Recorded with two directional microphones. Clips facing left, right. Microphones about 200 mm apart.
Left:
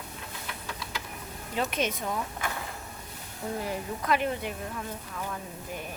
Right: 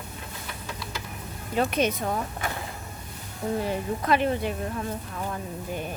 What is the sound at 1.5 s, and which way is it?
Speech, 45° right (ahead or behind).